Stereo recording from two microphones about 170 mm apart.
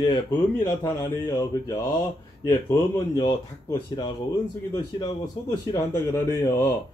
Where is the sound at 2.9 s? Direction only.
20° left (ahead or behind).